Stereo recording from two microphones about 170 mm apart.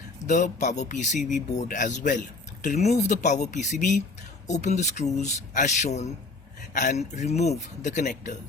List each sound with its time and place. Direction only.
0.3 s speech: 45° left (ahead or behind)